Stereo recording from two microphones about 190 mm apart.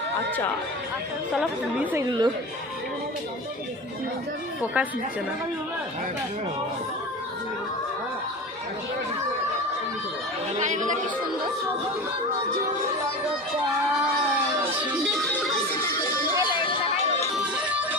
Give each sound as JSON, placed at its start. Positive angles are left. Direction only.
{"t": 1.3, "sound": "a woman's voice", "side_deg": -5}
{"t": 2.0, "sound": "speech", "side_deg": -25}
{"t": 4.6, "sound": "a woman's voice", "side_deg": -10}
{"t": 10.6, "sound": "speech", "side_deg": -40}
{"t": 16.0, "sound": "music", "side_deg": 15}
{"t": 17.3, "sound": "music", "side_deg": -5}